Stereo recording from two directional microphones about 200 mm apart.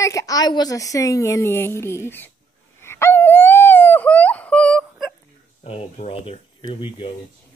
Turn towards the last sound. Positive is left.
turn(degrees=25)  # may be behind; listen again after turning